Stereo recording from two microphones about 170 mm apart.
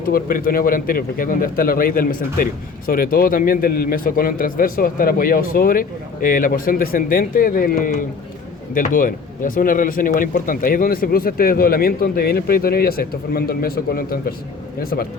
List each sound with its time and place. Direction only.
0.0 s speech: 55° left (ahead or behind)